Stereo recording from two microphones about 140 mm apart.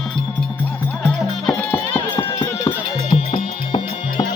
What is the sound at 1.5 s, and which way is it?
Music, 10° left (ahead or behind).